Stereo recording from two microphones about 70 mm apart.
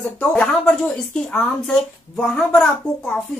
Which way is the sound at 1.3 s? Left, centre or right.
Centre.